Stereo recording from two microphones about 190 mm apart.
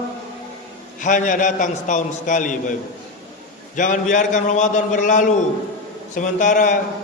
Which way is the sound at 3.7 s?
40° left (ahead or behind).